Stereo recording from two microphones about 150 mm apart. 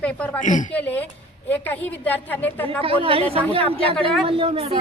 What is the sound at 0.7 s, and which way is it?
A woman's voice, 10° left (ahead or behind).